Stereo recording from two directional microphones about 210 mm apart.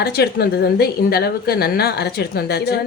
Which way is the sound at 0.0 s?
50° left (ahead or behind).